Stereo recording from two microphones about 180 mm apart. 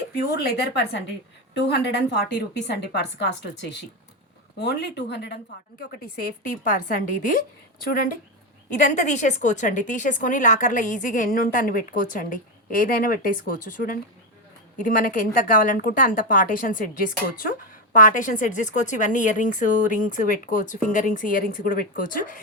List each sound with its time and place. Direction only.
0.2 s a woman's voice: 60° left (ahead or behind)
4.5 s a woman's voice: 70° left (ahead or behind)
5.9 s a woman's voice: 55° left (ahead or behind)
8.8 s a woman's voice: 40° left (ahead or behind)